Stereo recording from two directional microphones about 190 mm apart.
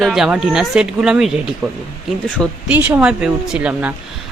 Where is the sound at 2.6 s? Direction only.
10° right (ahead or behind).